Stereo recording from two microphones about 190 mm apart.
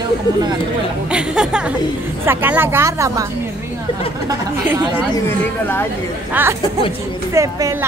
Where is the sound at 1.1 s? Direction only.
5° right (ahead or behind).